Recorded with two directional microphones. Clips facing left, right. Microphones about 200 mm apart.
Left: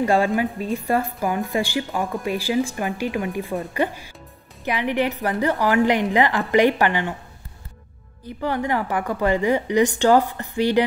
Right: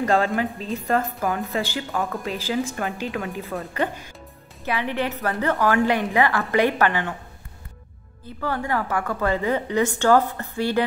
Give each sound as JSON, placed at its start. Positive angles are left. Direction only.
{"t": 0.0, "sound": "a woman's voice", "side_deg": 10}
{"t": 8.3, "sound": "a woman's voice", "side_deg": 15}